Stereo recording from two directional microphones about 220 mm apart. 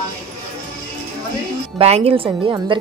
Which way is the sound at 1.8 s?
25° right (ahead or behind).